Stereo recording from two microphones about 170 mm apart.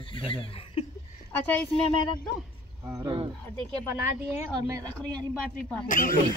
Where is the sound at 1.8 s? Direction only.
35° left (ahead or behind).